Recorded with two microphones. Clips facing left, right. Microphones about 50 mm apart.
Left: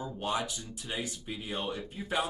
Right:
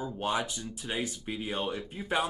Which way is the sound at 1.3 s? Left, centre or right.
Centre.